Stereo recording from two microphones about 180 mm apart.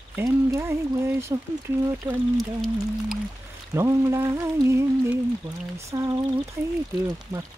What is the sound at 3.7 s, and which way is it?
Speech, 15° right (ahead or behind).